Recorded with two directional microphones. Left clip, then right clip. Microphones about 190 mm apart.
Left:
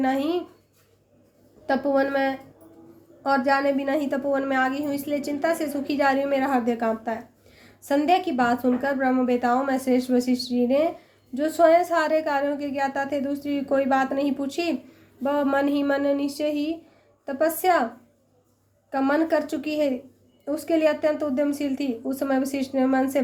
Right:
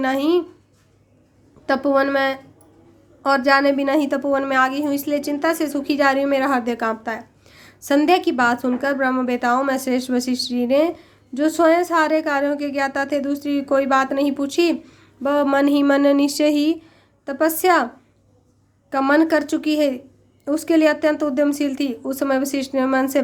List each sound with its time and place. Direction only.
0.0 s speech: 30° right (ahead or behind)
1.6 s a woman's voice: 35° right (ahead or behind)
17.2 s a woman's voice: 30° right (ahead or behind)
18.9 s a woman's voice: 30° right (ahead or behind)